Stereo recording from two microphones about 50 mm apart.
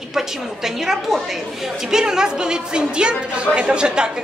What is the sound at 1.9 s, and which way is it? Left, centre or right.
A woman's voice, centre.